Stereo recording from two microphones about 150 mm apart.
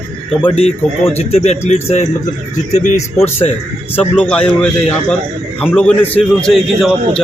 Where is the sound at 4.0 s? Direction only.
10° left (ahead or behind).